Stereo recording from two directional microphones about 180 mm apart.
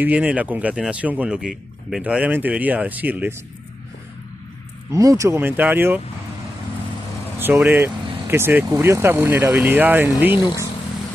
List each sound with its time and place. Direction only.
0.0 s speech: 10° right (ahead or behind)
4.9 s speech: 20° right (ahead or behind)
7.3 s speech: 10° right (ahead or behind)
10.3 s speech: 20° left (ahead or behind)